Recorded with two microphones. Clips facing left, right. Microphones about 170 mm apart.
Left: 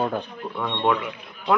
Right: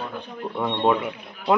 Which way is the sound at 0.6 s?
10° right (ahead or behind).